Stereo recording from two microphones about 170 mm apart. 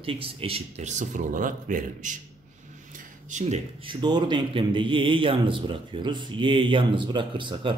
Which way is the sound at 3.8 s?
25° right (ahead or behind).